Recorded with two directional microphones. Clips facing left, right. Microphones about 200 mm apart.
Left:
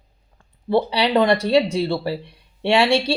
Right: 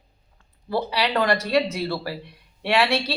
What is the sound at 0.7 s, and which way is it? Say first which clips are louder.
Speech: left 6 dB; 25° left (ahead or behind).